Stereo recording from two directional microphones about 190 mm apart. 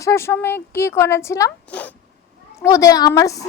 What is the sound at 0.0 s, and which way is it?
A woman's voice, 15° left (ahead or behind).